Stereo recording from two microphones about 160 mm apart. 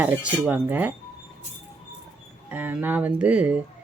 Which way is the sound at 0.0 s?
10° right (ahead or behind).